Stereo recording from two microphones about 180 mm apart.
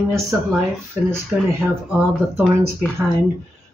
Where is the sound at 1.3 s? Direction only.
10° right (ahead or behind).